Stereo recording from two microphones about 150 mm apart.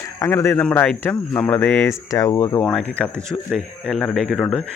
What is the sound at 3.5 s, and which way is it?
Speech, centre (ahead or behind).